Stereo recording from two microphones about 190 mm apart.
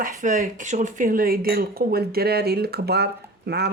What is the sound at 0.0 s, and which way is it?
Speech, 45° right (ahead or behind).